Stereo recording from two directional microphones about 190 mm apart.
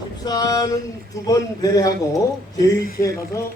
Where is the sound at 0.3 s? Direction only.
20° left (ahead or behind).